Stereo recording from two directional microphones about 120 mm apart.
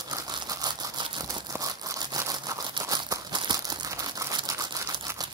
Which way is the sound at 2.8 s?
30° right (ahead or behind).